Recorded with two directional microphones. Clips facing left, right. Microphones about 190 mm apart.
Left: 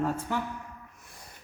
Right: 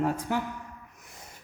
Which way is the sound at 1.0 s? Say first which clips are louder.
Right 2 dB; 20° right (ahead or behind).